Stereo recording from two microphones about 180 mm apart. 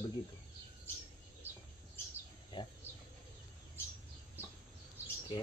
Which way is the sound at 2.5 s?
25° left (ahead or behind).